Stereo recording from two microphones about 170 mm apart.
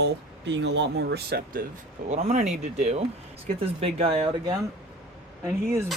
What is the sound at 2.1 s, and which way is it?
Speech, 40° right (ahead or behind).